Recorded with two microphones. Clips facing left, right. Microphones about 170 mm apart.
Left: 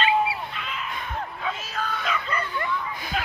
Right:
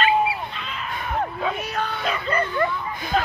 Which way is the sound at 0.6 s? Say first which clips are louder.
Right 1 dB; 35° right (ahead or behind).